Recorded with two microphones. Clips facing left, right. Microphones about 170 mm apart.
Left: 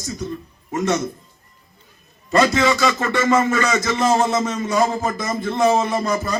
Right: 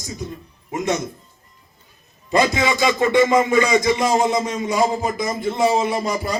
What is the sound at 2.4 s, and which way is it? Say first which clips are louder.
Music: left 2 dB; 15° right (ahead or behind).